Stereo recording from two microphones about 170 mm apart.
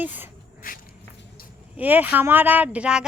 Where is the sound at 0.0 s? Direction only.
10° right (ahead or behind).